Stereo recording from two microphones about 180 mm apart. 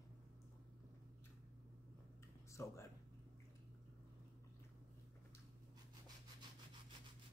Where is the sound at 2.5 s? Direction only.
15° left (ahead or behind).